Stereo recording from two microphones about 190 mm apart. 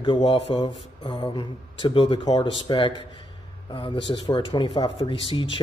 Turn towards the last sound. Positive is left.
turn(degrees=25)  # may be behind; listen again after turning